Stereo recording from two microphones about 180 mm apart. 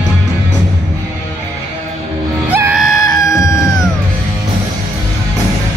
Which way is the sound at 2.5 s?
10° right (ahead or behind).